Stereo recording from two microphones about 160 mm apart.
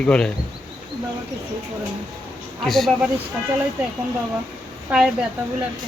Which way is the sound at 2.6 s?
Centre (ahead or behind).